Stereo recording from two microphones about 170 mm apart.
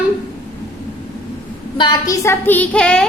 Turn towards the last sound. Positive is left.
turn(degrees=5)  # may be behind; listen again after turning